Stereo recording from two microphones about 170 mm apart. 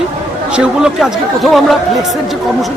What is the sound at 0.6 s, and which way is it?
Speech, 5° right (ahead or behind).